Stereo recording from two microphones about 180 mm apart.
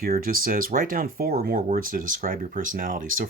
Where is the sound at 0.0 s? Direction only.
50° right (ahead or behind).